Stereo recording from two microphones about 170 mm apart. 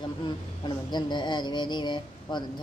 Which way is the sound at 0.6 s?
25° left (ahead or behind).